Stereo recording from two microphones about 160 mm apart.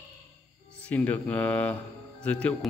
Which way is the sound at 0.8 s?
10° left (ahead or behind).